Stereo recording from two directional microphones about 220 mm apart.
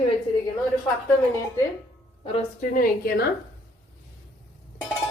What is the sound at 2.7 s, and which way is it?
Speech, 45° left (ahead or behind).